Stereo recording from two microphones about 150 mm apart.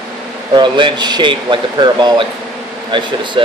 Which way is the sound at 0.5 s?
30° right (ahead or behind).